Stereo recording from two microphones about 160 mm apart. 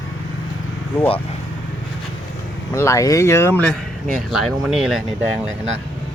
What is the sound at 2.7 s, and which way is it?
Speech, 20° left (ahead or behind).